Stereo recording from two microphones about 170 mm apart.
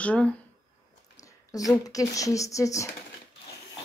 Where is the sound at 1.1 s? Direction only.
20° left (ahead or behind).